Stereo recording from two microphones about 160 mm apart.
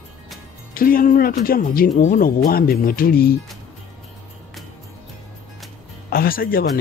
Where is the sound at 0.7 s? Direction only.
65° left (ahead or behind).